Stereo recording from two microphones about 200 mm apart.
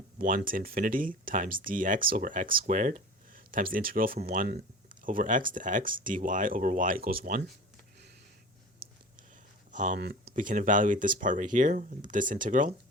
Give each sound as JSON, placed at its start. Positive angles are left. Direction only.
{"t": 0.2, "sound": "speech", "side_deg": -45}
{"t": 9.7, "sound": "speech", "side_deg": -40}